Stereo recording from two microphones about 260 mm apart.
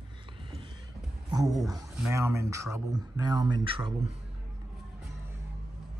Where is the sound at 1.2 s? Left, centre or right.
Centre.